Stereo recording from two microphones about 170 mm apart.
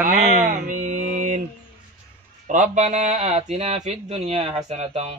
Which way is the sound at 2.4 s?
45° right (ahead or behind).